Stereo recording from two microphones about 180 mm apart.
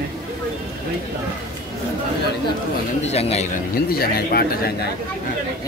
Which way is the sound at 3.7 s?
55° left (ahead or behind).